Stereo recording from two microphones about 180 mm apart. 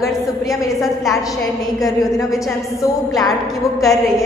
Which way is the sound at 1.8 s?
20° left (ahead or behind).